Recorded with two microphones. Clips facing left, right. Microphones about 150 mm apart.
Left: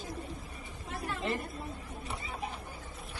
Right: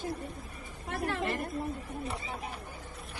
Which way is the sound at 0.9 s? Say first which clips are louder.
Right 5 dB; 65° right (ahead or behind).